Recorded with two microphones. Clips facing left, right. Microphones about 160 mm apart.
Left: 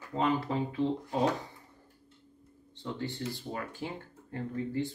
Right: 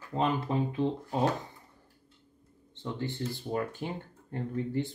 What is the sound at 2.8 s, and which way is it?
Speech, 20° right (ahead or behind).